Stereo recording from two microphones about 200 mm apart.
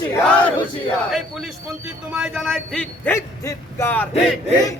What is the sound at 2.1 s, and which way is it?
A man's voice, centre (ahead or behind).